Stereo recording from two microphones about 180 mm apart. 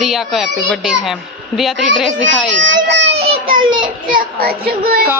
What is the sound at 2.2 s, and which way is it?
Baby cry, 90° right.